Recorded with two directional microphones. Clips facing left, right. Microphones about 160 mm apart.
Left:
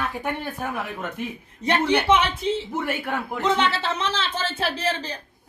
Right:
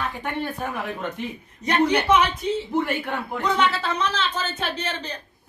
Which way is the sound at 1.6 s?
30° left (ahead or behind).